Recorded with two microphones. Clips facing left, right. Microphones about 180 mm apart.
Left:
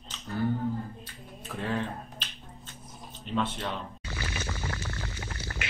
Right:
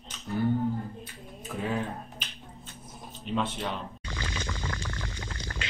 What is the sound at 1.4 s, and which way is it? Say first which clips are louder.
Speech: right 1 dB; 5° right (ahead or behind).